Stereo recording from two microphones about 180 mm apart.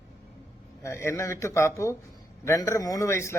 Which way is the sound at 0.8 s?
15° left (ahead or behind).